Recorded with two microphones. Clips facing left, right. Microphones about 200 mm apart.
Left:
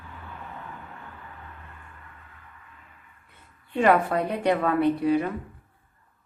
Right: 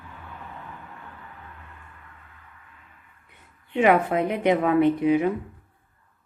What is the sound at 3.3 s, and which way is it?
A woman's voice, 15° right (ahead or behind).